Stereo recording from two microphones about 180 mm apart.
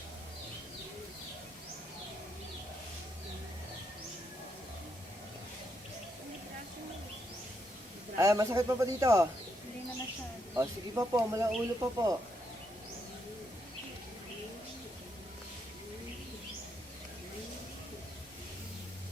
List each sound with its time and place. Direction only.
8.2 s a man's voice: 20° right (ahead or behind)
10.5 s speech: 15° right (ahead or behind)